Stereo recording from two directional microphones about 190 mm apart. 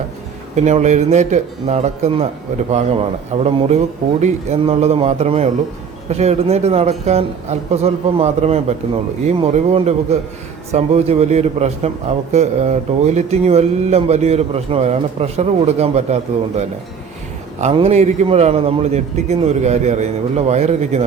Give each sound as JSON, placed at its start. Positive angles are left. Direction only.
{"t": 0.5, "sound": "a man's voice", "side_deg": -35}